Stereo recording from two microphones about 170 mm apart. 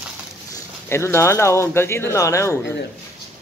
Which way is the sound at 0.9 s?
15° left (ahead or behind).